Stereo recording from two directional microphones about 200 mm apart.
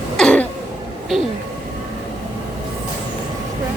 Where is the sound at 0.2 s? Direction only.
5° left (ahead or behind).